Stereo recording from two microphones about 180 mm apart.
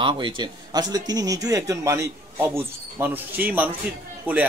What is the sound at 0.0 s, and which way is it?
A man's voice, 25° right (ahead or behind).